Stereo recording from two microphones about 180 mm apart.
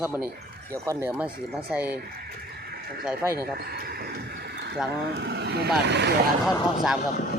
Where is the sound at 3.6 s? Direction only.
60° right (ahead or behind).